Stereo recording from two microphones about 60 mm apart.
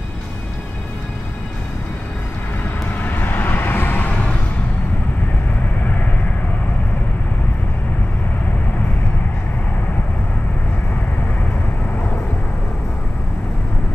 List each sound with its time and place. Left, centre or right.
3.0 s vehicle: left